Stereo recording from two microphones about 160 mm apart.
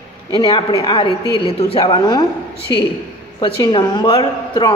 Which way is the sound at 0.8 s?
35° left (ahead or behind).